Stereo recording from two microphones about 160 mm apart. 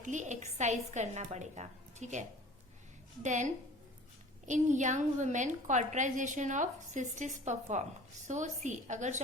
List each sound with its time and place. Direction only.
0.0 s a woman's voice: 50° right (ahead or behind)
3.2 s a woman's voice: 50° right (ahead or behind)